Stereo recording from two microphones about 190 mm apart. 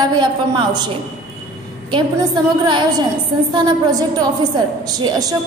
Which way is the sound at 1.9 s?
25° right (ahead or behind).